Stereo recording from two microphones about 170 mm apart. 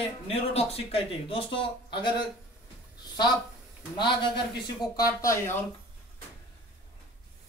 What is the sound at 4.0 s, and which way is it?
A man's voice, 25° left (ahead or behind).